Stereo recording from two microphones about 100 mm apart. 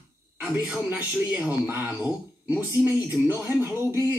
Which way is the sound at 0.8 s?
15° right (ahead or behind).